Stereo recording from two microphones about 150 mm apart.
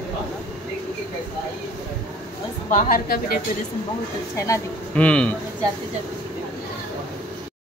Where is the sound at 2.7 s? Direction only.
75° left (ahead or behind).